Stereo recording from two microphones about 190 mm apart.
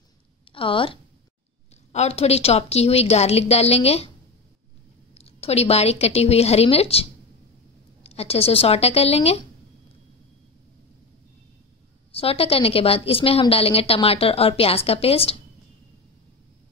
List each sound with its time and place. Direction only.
0.5 s a woman's voice: 25° left (ahead or behind)
5.1 s a woman's voice: 30° left (ahead or behind)
12.1 s a woman's voice: 30° left (ahead or behind)